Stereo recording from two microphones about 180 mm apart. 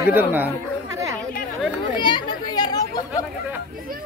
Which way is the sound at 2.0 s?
25° left (ahead or behind).